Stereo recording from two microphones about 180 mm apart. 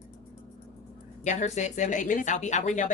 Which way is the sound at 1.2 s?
40° left (ahead or behind).